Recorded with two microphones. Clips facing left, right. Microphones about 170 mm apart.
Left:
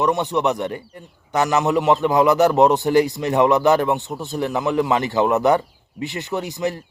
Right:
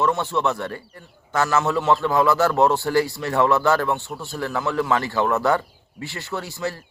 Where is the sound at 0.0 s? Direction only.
20° left (ahead or behind).